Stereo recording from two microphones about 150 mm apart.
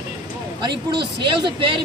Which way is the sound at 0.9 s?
30° right (ahead or behind).